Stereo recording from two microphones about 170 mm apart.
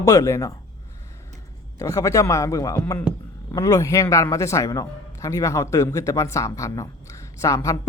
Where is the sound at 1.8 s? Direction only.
20° left (ahead or behind).